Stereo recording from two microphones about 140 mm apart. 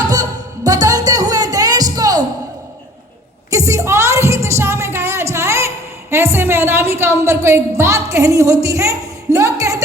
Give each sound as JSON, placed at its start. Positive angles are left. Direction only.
{"t": 0.1, "sound": "music", "side_deg": -25}
{"t": 3.7, "sound": "music", "side_deg": -20}